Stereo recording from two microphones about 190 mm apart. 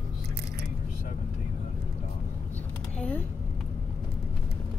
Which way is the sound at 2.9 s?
5° left (ahead or behind).